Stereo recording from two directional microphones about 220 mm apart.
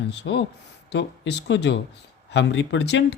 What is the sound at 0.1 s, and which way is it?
Speech, 50° left (ahead or behind).